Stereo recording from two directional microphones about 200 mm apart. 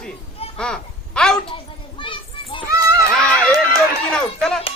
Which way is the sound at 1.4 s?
25° left (ahead or behind).